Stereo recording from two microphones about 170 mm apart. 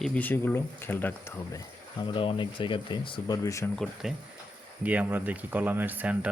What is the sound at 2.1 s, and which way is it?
Speech, 30° left (ahead or behind).